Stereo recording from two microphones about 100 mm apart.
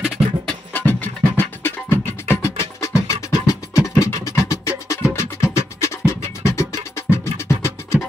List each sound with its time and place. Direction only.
0.5 s music: 20° left (ahead or behind)